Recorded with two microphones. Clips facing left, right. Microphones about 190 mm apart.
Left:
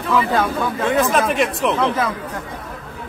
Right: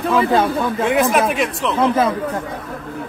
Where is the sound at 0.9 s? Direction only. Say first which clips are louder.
Right 1 dB; 10° right (ahead or behind).